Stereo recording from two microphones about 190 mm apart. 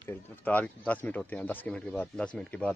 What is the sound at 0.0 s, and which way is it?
Speech, 10° left (ahead or behind).